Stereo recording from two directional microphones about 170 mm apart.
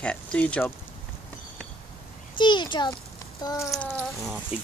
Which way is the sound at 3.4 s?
20° left (ahead or behind).